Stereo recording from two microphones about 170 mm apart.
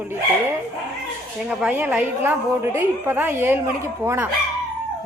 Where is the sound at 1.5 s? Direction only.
5° right (ahead or behind).